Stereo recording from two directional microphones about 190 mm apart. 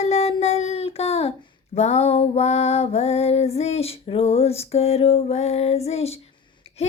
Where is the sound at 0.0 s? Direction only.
35° left (ahead or behind).